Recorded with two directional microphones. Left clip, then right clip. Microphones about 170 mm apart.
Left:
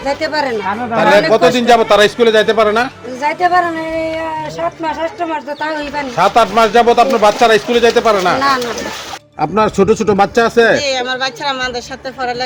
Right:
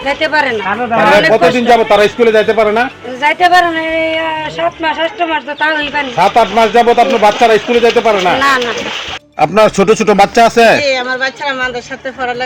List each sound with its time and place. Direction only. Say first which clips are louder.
0.0 s speech: right 4 dB; 15° left (ahead or behind)
1.3 s a man's voice: right 1 dB; centre (ahead or behind)
6.0 s a man's voice: right 1 dB; 5° right (ahead or behind)
9.4 s speech: right 4 dB; 40° right (ahead or behind)